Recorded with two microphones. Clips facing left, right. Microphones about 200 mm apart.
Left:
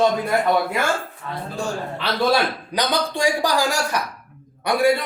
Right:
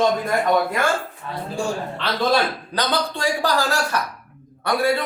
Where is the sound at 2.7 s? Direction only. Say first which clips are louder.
Left 1 dB; 15° left (ahead or behind).